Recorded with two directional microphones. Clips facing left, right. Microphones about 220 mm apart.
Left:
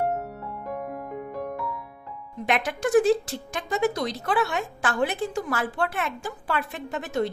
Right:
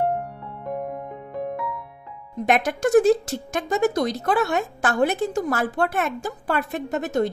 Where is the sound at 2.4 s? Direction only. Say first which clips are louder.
Right 5 dB; 45° right (ahead or behind).